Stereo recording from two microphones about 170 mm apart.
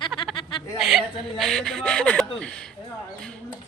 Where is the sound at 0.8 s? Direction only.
Centre (ahead or behind).